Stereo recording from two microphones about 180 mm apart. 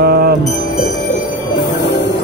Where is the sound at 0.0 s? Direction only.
60° right (ahead or behind).